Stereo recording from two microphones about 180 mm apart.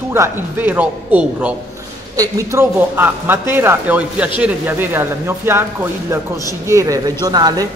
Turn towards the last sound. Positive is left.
turn(degrees=-20)  # may be behind; listen again after turning